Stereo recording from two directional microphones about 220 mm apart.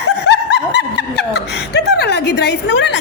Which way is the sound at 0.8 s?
50° left (ahead or behind).